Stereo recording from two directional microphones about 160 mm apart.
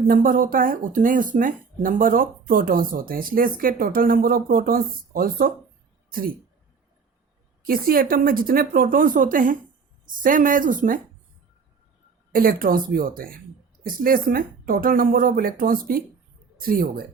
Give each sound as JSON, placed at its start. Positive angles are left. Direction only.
{"t": 0.1, "sound": "speech", "side_deg": -60}
{"t": 7.6, "sound": "speech", "side_deg": -65}
{"t": 12.3, "sound": "speech", "side_deg": -65}